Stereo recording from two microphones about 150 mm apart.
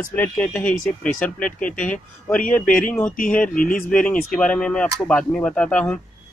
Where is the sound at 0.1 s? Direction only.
10° left (ahead or behind).